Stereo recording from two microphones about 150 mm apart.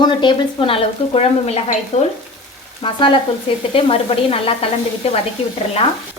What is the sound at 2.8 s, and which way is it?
A woman's voice, 35° left (ahead or behind).